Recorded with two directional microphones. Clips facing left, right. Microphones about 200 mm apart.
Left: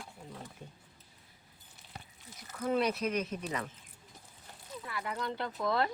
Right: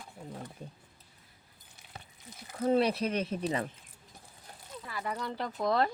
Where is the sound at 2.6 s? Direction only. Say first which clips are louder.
Right 4 dB; 30° right (ahead or behind).